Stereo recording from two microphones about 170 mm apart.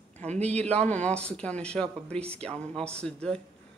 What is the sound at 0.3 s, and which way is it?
Speech, 40° right (ahead or behind).